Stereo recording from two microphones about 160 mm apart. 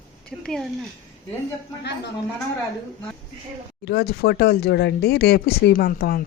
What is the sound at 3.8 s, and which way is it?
Speech, 80° left.